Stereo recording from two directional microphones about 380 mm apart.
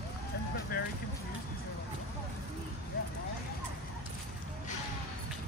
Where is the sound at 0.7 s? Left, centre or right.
Left.